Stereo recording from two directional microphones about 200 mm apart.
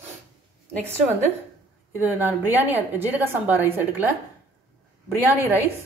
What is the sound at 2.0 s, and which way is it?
A woman's voice, 10° right (ahead or behind).